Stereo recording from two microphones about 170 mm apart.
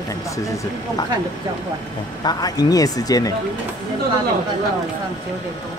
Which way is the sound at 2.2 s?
25° left (ahead or behind).